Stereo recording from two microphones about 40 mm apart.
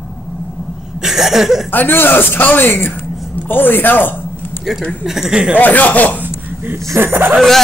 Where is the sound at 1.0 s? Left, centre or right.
Centre.